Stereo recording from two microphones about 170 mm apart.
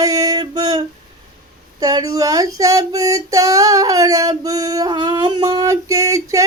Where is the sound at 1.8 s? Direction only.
20° right (ahead or behind).